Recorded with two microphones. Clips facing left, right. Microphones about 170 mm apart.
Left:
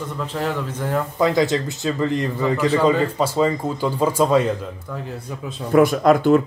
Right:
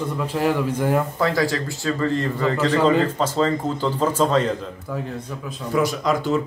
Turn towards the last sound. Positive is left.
turn(degrees=55)  # may be behind; listen again after turning